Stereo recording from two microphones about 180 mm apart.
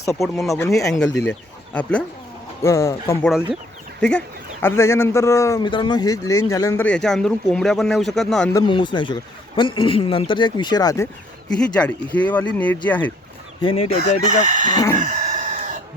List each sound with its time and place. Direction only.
0.1 s a man's voice: centre (ahead or behind)
3.2 s speech: centre (ahead or behind)
4.6 s a man's voice: 15° left (ahead or behind)
6.8 s speech: 5° left (ahead or behind)
8.5 s a man's voice: 25° left (ahead or behind)
11.4 s a man's voice: 5° left (ahead or behind)
13.6 s speech: 30° left (ahead or behind)
14.4 s speech: 45° right (ahead or behind)
14.9 s chicken: 45° right (ahead or behind)